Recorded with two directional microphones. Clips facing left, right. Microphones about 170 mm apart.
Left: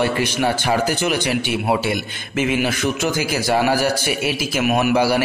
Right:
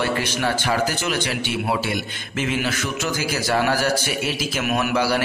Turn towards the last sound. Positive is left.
turn(degrees=10)  # may be behind; listen again after turning